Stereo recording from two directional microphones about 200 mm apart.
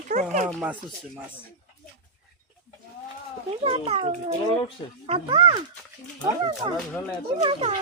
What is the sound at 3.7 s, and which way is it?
A child's voice, 30° right (ahead or behind).